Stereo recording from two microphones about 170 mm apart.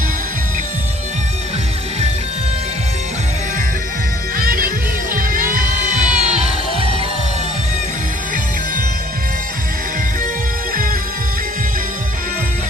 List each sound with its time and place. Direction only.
4.4 s music: 60° right (ahead or behind); by 6.8 s 40° right (ahead or behind)